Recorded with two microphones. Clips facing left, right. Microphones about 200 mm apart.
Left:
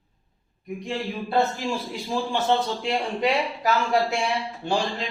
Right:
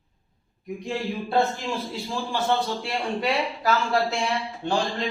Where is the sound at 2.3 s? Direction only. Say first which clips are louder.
Even; 20° left (ahead or behind).